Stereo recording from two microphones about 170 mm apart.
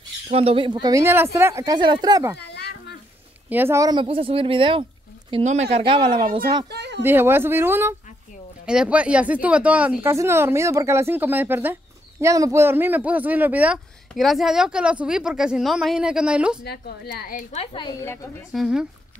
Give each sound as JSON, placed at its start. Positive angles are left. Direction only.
{"t": 0.3, "sound": "speech", "side_deg": -35}
{"t": 2.3, "sound": "a sound", "side_deg": 80}
{"t": 3.4, "sound": "speech", "side_deg": -10}
{"t": 4.0, "sound": "speech", "side_deg": -30}
{"t": 5.4, "sound": "speech", "side_deg": -40}
{"t": 6.7, "sound": "a sound", "side_deg": -85}
{"t": 7.0, "sound": "speech", "side_deg": -10}
{"t": 16.6, "sound": "a woman's voice", "side_deg": 70}
{"t": 17.5, "sound": "a woman's voice", "side_deg": 30}
{"t": 18.5, "sound": "speech", "side_deg": 0}